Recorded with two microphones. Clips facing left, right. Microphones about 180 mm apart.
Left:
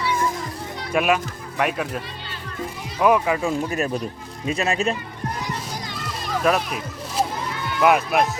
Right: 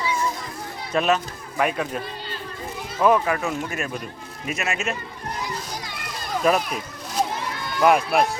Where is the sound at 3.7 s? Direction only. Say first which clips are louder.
Left 5 dB; 35° left (ahead or behind).